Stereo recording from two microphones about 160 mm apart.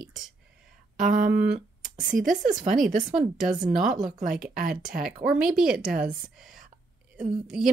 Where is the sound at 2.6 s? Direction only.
Centre (ahead or behind).